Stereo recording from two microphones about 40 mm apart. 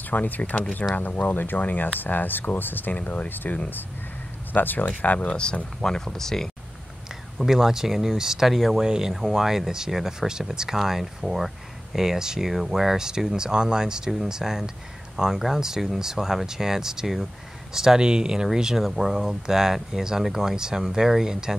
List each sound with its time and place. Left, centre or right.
0.1 s speech: left
3.0 s speech: left
4.5 s speech: left
4.8 s speech: left
5.3 s speech: left
7.3 s speech: centre
8.8 s speech: centre
9.1 s speech: centre
18.9 s speech: centre